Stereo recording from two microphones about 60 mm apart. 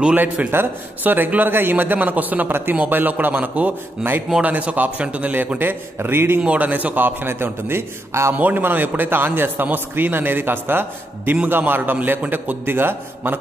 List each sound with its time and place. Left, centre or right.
0.5 s a man's voice: right
6.4 s a man's voice: right
8.4 s a man's voice: right